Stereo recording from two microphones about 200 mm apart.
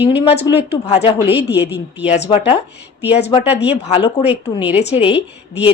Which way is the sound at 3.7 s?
30° left (ahead or behind).